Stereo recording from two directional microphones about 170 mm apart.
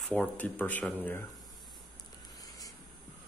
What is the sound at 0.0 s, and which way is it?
Speech, 5° left (ahead or behind).